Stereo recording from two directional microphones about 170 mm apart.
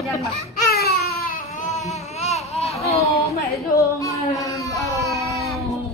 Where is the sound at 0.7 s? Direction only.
65° left (ahead or behind).